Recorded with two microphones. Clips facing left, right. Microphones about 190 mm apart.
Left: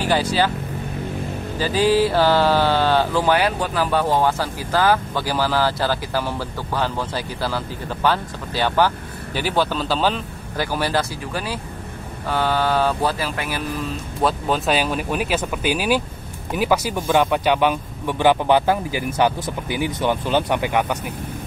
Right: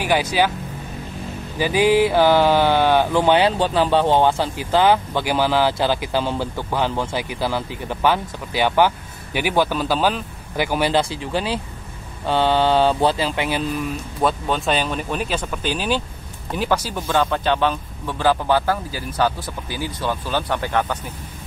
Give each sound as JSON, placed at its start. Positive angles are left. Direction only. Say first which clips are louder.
{"t": 0.0, "sound": "speech", "louder": "even", "side_deg": -15}
{"t": 1.6, "sound": "speech", "louder": "right 1 dB", "side_deg": -15}
{"t": 12.3, "sound": "mantra", "louder": "right 3 dB", "side_deg": -25}
{"t": 14.2, "sound": "speech", "louder": "even", "side_deg": 5}